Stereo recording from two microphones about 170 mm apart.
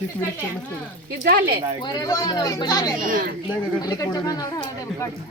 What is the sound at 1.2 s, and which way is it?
Speech, 60° right (ahead or behind).